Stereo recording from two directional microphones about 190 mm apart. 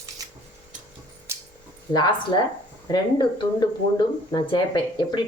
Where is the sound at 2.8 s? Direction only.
25° left (ahead or behind).